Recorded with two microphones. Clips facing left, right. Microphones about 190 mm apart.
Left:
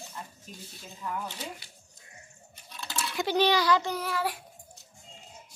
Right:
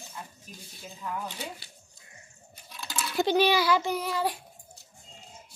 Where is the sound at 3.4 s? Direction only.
10° right (ahead or behind).